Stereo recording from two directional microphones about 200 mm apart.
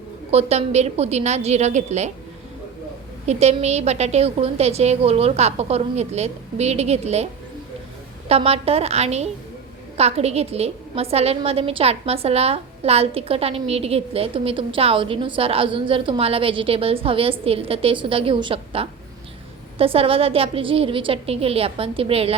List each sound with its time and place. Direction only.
0.3 s a woman's voice: 30° right (ahead or behind)
3.2 s a woman's voice: 35° right (ahead or behind)
8.3 s a woman's voice: 30° right (ahead or behind)